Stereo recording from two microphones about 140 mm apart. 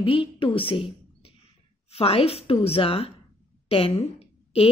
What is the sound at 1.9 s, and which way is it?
A woman's voice, 45° left (ahead or behind).